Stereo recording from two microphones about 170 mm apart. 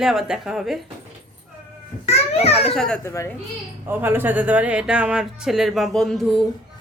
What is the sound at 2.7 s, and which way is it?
Speech, 5° left (ahead or behind).